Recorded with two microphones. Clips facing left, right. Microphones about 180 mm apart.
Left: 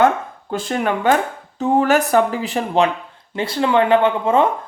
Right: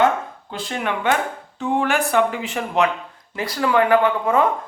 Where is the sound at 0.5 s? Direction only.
45° left (ahead or behind).